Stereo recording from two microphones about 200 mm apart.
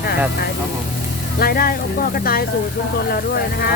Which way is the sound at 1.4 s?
50° left (ahead or behind).